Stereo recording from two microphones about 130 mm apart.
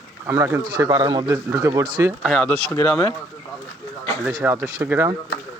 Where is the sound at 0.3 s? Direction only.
20° right (ahead or behind).